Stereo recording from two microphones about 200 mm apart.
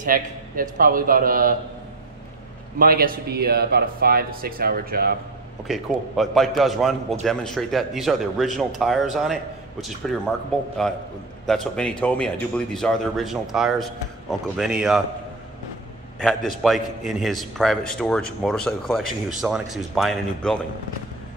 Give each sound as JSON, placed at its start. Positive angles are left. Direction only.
{"t": 0.0, "sound": "speech", "side_deg": -45}
{"t": 2.8, "sound": "speech", "side_deg": -50}
{"t": 5.7, "sound": "a man's voice", "side_deg": 0}
{"t": 16.2, "sound": "a man's voice", "side_deg": 0}